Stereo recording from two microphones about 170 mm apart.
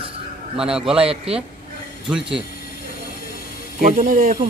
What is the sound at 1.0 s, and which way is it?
Speech, 35° right (ahead or behind).